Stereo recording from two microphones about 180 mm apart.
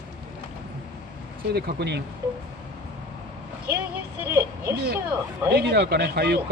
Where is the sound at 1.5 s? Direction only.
65° right (ahead or behind).